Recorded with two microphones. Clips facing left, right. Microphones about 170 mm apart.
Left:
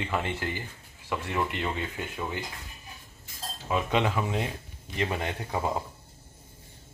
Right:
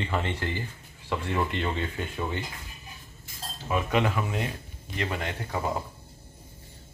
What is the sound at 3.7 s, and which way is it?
Speech, 20° left (ahead or behind).